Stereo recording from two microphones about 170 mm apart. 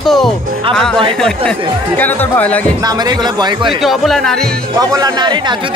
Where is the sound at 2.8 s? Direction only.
25° right (ahead or behind).